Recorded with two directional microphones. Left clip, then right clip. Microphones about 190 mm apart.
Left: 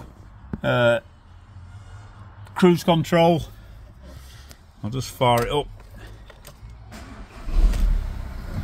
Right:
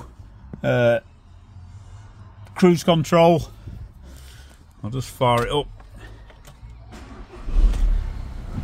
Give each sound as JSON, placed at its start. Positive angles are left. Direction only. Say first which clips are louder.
{"t": 0.6, "sound": "speech", "louder": "right 1 dB", "side_deg": -20}
{"t": 2.6, "sound": "speech", "louder": "right 1 dB", "side_deg": -15}
{"t": 4.8, "sound": "speech", "louder": "even", "side_deg": 10}